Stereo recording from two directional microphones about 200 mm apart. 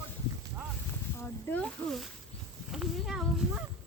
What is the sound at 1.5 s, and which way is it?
Speech, 5° left (ahead or behind).